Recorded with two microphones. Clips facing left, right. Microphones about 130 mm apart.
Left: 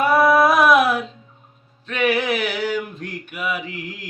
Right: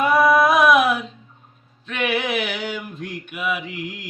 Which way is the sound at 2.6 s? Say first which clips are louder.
Left 5 dB; 40° left (ahead or behind).